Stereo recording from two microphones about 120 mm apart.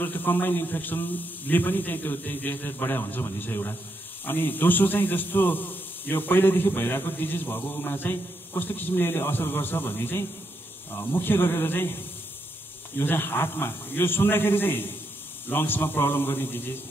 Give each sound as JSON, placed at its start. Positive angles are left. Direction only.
{"t": 0.0, "sound": "a man's voice", "side_deg": 15}